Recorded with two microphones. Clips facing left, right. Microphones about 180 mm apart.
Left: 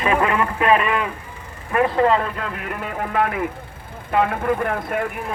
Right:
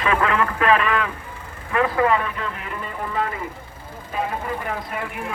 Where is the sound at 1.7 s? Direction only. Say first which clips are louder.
Left 2 dB; 30° left (ahead or behind).